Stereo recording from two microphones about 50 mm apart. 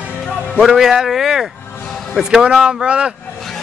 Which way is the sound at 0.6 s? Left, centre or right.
Centre.